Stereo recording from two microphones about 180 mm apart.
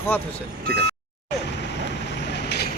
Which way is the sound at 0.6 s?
60° right (ahead or behind).